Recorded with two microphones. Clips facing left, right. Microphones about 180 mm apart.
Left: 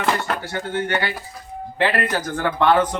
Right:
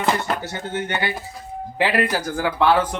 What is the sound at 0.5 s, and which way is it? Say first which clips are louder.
Speech: left 3 dB; 20° right (ahead or behind).